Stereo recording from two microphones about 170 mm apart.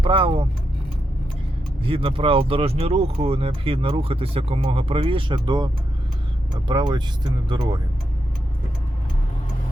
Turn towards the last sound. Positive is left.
turn(degrees=-25)  # may be behind; listen again after turning